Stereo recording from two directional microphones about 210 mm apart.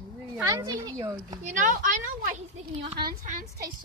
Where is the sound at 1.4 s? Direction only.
40° right (ahead or behind).